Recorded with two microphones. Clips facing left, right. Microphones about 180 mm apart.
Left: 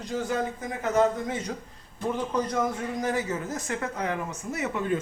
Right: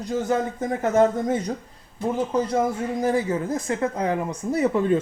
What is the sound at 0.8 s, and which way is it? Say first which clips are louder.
Speech: right 4 dB; 45° right (ahead or behind).